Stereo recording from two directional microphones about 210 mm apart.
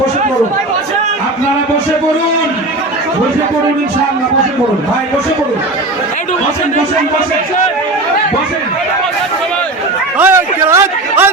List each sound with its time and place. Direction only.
10.2 s a man's voice: 10° right (ahead or behind)